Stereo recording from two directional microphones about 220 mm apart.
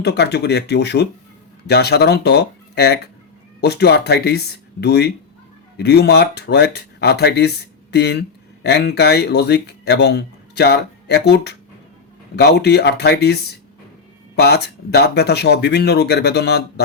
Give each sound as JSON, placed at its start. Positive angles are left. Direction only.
{"t": 0.0, "sound": "speech", "side_deg": 50}